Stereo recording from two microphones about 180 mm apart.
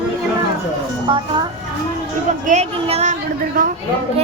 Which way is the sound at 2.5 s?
40° right (ahead or behind).